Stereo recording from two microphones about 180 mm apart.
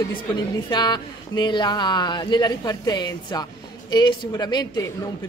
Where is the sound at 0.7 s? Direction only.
25° left (ahead or behind).